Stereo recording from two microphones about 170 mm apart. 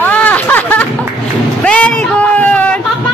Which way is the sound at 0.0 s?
10° left (ahead or behind).